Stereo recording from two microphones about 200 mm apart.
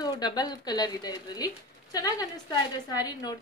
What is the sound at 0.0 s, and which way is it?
A woman's voice, 20° left (ahead or behind).